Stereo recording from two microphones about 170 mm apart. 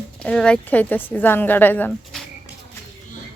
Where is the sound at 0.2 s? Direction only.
5° left (ahead or behind).